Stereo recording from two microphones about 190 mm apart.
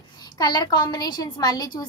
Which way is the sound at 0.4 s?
20° left (ahead or behind).